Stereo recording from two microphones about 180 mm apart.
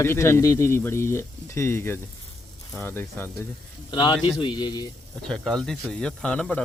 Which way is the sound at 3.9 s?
25° left (ahead or behind).